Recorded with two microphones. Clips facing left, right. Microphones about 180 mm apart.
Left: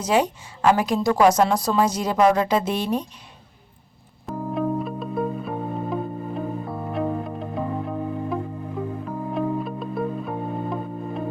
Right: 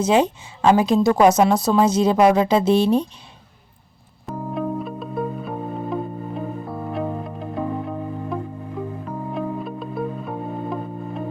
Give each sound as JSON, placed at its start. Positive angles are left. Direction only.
{"t": 0.0, "sound": "a woman's voice", "side_deg": -25}
{"t": 4.3, "sound": "music", "side_deg": 0}